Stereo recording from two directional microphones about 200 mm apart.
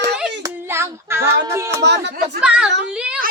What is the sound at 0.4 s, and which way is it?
Child singing, 10° right (ahead or behind).